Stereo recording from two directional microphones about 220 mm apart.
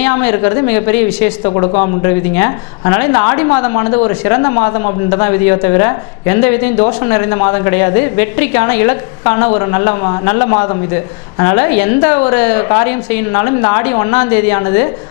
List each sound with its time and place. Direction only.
0.0 s speech: 15° left (ahead or behind)